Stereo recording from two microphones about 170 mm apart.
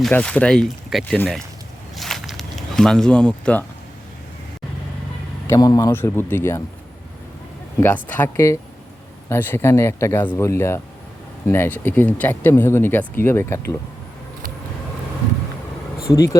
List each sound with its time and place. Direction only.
0.0 s speech: 5° left (ahead or behind)
2.0 s a sound: centre (ahead or behind)
5.5 s speech: 20° left (ahead or behind)
7.8 s speech: 10° left (ahead or behind)
16.1 s speech: 20° left (ahead or behind)